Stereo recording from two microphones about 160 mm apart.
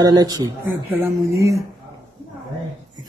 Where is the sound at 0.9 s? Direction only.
15° right (ahead or behind).